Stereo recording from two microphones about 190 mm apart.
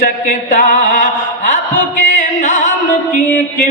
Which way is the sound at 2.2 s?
40° left (ahead or behind).